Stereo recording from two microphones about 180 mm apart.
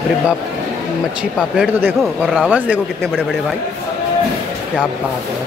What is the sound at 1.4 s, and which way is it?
A man's voice, 5° right (ahead or behind).